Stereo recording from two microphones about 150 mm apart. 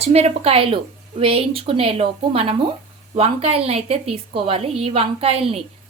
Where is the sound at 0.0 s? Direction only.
45° right (ahead or behind).